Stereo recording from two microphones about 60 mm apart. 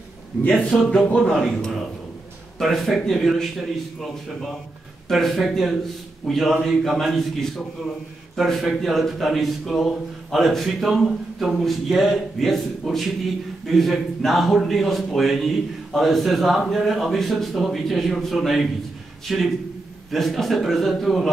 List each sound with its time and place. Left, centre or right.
0.5 s a man's voice: centre